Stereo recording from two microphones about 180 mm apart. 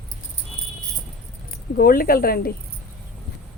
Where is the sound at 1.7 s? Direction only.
55° left (ahead or behind).